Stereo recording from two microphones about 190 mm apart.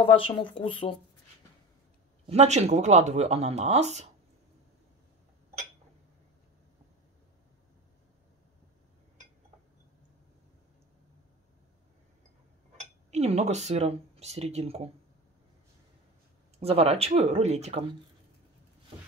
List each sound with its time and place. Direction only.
0.0 s speech: 25° left (ahead or behind)
2.2 s speech: 35° right (ahead or behind)
12.7 s speech: 35° right (ahead or behind)
16.5 s speech: 30° right (ahead or behind)